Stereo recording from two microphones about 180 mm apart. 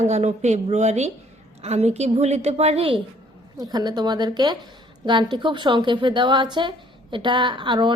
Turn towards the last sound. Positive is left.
turn(degrees=-25)  # may be behind; listen again after turning